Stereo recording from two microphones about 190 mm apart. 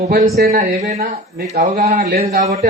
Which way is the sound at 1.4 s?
40° right (ahead or behind).